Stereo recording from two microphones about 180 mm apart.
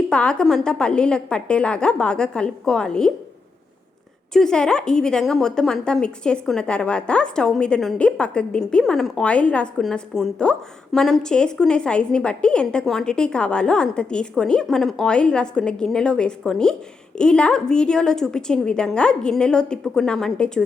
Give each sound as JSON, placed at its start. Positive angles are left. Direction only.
{"t": 0.1, "sound": "a woman's voice", "side_deg": 5}
{"t": 4.4, "sound": "a woman's voice", "side_deg": 5}